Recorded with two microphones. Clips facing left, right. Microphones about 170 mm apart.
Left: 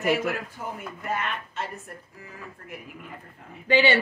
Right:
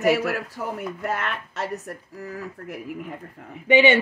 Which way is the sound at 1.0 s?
80° right.